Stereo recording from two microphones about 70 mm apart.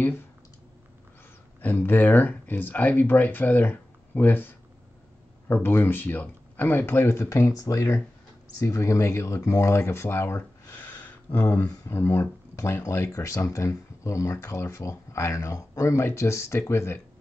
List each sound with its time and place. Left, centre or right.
1.6 s speech: left
10.8 s a sound: left
11.9 s speech: left
12.9 s speech: left